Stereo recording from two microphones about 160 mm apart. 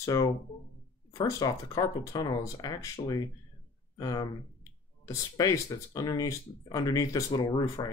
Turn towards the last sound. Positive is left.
turn(degrees=25)  # may be behind; listen again after turning